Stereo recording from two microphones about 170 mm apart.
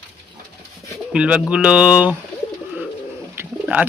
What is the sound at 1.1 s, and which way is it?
Speech, 5° right (ahead or behind).